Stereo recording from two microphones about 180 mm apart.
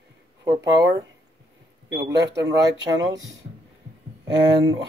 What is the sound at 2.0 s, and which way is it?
Speech, 75° right (ahead or behind).